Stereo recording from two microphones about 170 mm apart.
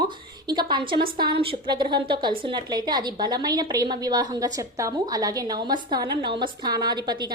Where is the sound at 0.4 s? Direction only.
25° right (ahead or behind).